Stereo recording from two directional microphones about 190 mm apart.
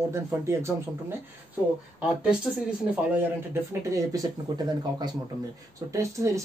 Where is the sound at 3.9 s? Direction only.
20° right (ahead or behind).